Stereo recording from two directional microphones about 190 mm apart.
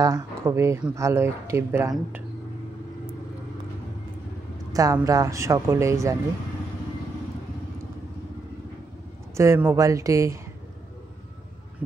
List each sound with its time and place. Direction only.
0.0 s speech: 20° right (ahead or behind)
4.7 s speech: 20° right (ahead or behind)
9.3 s speech: 15° right (ahead or behind)